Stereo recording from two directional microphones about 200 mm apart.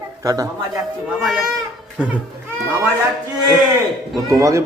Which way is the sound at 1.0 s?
5° right (ahead or behind).